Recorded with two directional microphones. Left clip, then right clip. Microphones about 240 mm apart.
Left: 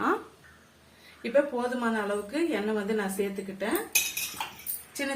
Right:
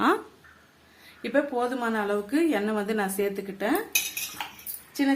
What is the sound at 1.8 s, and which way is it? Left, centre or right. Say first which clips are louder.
A woman's voice: right 2 dB; right.